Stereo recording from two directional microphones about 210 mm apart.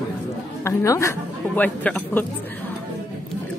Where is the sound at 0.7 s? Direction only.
15° left (ahead or behind).